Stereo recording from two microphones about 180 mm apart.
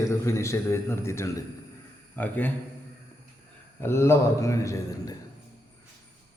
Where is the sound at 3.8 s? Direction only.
15° left (ahead or behind).